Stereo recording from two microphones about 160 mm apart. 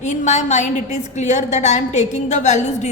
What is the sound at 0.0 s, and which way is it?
A woman's voice, 45° left (ahead or behind).